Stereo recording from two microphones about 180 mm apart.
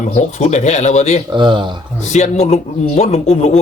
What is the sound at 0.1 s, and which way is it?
A man's voice, 40° left (ahead or behind).